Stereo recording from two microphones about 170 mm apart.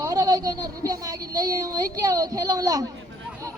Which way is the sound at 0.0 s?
20° right (ahead or behind).